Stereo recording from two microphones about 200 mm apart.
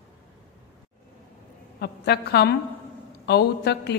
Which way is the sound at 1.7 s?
55° left (ahead or behind).